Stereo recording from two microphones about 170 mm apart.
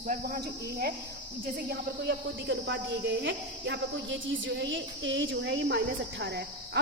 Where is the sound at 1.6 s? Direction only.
75° right (ahead or behind).